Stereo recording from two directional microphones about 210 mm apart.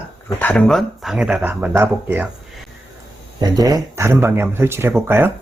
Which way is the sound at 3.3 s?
20° right (ahead or behind).